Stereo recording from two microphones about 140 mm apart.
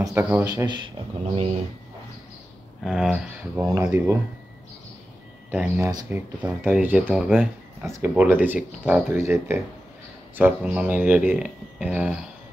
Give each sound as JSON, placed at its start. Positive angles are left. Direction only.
{"t": 0.0, "sound": "speech", "side_deg": -15}
{"t": 0.7, "sound": "speech", "side_deg": -35}
{"t": 2.8, "sound": "speech", "side_deg": -5}
{"t": 3.9, "sound": "speech", "side_deg": -20}
{"t": 5.5, "sound": "speech", "side_deg": -15}
{"t": 7.8, "sound": "speech", "side_deg": -20}